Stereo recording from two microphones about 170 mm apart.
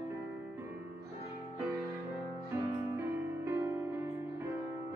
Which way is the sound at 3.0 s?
15° right (ahead or behind).